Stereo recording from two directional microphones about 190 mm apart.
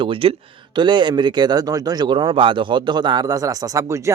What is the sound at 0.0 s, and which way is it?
A man's voice, 30° right (ahead or behind).